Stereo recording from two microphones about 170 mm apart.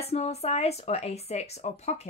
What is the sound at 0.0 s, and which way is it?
Speech, 40° left (ahead or behind).